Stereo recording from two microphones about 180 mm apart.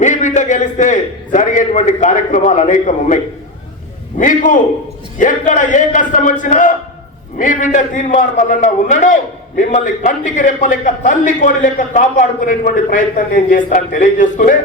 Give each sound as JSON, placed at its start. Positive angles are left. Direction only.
{"t": 0.0, "sound": "a man's voice", "side_deg": 40}
{"t": 4.2, "sound": "a man's voice", "side_deg": 45}